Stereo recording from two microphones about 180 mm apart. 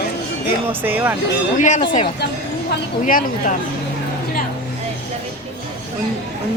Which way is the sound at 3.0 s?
50° left (ahead or behind).